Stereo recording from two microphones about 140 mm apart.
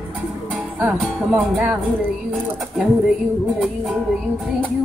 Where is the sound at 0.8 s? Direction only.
5° right (ahead or behind).